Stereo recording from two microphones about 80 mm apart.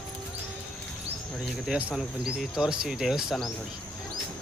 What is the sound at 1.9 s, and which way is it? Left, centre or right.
Speech, centre.